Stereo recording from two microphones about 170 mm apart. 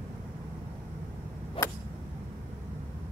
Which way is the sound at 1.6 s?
30° left (ahead or behind).